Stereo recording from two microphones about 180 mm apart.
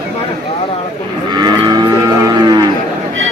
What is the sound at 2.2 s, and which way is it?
Cattle, 20° right (ahead or behind).